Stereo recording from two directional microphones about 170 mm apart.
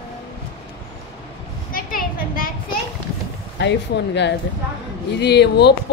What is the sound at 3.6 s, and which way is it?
Speech, 90° left.